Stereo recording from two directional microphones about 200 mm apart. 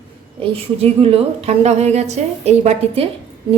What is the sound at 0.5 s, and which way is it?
A woman's voice, 30° right (ahead or behind).